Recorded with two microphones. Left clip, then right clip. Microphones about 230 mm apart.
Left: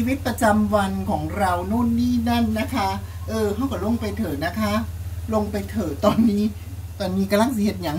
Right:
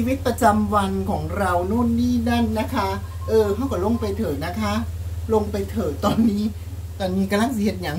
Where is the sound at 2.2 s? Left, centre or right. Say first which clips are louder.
Even; centre.